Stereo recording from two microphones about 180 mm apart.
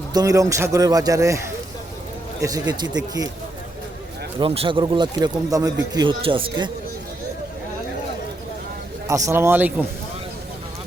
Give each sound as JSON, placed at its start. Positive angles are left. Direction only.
{"t": 0.1, "sound": "speech", "side_deg": -20}
{"t": 2.4, "sound": "speech", "side_deg": -20}
{"t": 4.4, "sound": "speech", "side_deg": -30}
{"t": 9.0, "sound": "speech", "side_deg": -15}